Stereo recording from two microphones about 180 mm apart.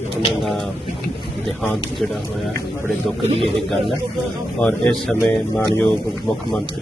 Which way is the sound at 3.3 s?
30° right (ahead or behind).